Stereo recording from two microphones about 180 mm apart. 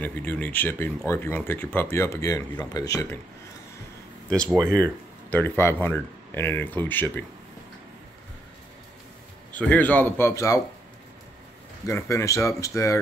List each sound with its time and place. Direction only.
0.0 s speech: 10° left (ahead or behind)
4.7 s speech: 10° left (ahead or behind)
9.5 s speech: 10° left (ahead or behind)
11.8 s speech: 15° left (ahead or behind)